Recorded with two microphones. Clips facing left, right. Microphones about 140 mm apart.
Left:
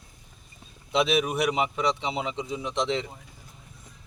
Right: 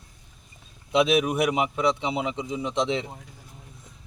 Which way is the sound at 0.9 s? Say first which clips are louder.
Right 3 dB; 10° right (ahead or behind).